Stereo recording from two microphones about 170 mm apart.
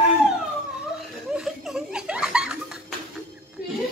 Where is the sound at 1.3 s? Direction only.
Centre (ahead or behind).